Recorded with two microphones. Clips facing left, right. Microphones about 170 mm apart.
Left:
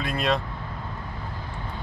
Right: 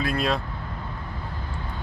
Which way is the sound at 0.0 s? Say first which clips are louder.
Even; centre (ahead or behind).